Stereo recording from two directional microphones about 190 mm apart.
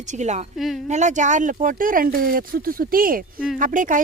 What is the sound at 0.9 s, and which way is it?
Speech, 40° right (ahead or behind).